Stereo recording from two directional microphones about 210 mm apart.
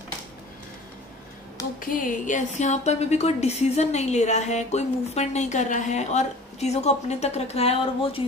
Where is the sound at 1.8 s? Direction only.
40° left (ahead or behind).